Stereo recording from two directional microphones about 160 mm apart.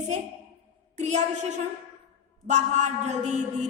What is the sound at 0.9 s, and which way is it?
A woman's voice, 45° right (ahead or behind).